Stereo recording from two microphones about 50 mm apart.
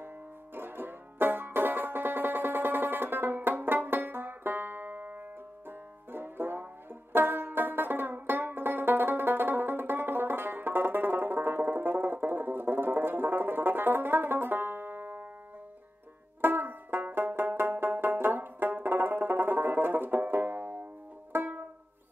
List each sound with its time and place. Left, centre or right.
0.6 s music: right
5.7 s banjo: right
16.3 s banjo: right